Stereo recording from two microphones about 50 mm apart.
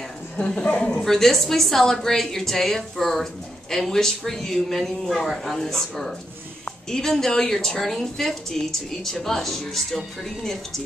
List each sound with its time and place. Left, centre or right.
0.7 s speech: left
1.0 s speech: centre